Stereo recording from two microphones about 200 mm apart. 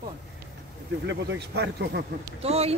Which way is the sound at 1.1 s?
60° right (ahead or behind).